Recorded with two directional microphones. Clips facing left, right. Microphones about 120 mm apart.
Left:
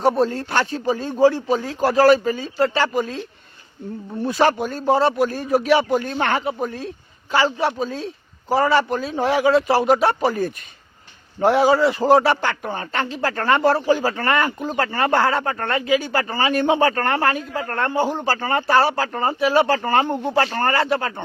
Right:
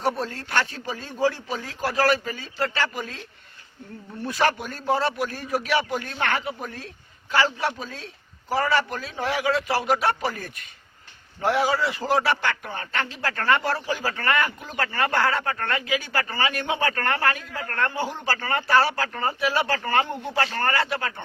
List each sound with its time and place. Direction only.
0.1 s speech: 25° left (ahead or behind)
4.2 s speech: 25° left (ahead or behind)